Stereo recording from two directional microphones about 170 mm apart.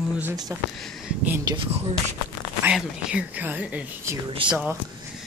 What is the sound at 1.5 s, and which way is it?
Speech, 35° right (ahead or behind).